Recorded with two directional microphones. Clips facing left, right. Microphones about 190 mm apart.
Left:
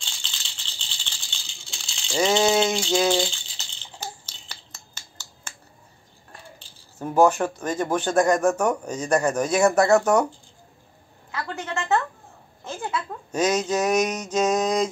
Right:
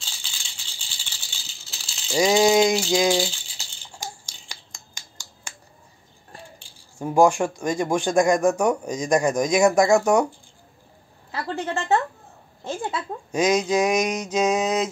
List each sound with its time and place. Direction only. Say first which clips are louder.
0.0 s music: left 1 dB; 10° right (ahead or behind)
6.6 s speech: right 2 dB; 10° right (ahead or behind)
11.3 s a sound: right 3 dB; 30° right (ahead or behind)
12.6 s speech: right 1 dB; 30° right (ahead or behind)
13.3 s speech: right 2 dB; 10° right (ahead or behind)